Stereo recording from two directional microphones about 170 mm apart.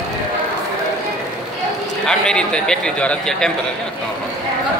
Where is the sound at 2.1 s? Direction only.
5° left (ahead or behind).